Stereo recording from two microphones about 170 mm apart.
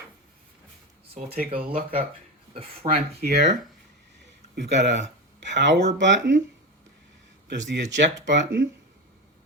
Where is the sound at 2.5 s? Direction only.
35° right (ahead or behind).